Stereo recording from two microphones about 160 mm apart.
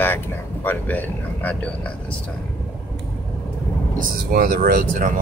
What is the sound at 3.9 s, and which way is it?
Speech, 65° right (ahead or behind).